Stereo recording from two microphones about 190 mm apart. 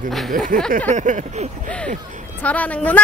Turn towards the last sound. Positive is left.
turn(degrees=5)  # may be behind; listen again after turning